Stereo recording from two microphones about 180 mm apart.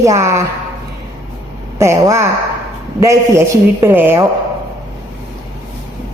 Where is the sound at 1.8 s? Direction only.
15° right (ahead or behind).